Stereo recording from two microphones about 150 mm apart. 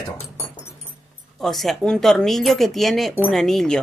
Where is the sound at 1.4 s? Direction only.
Centre (ahead or behind).